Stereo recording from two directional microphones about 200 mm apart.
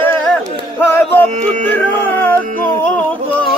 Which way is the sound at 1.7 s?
10° left (ahead or behind).